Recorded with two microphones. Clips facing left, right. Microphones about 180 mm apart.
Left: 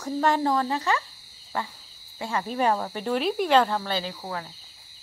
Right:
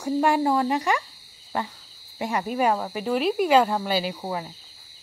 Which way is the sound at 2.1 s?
15° right (ahead or behind).